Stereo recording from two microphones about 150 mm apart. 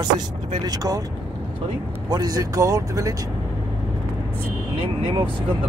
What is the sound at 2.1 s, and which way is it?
Speech, 25° right (ahead or behind).